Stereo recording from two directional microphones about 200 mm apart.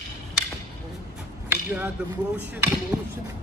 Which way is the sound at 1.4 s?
10° right (ahead or behind).